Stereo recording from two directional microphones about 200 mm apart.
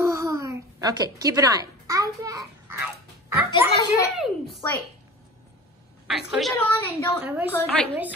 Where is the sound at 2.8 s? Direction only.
10° right (ahead or behind).